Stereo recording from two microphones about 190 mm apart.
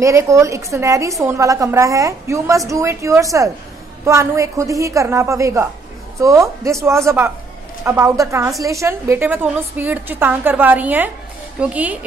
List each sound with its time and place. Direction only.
0.0 s a woman's voice: 15° right (ahead or behind)